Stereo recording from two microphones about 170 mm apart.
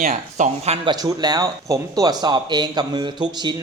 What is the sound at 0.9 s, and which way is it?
Speech, 25° right (ahead or behind).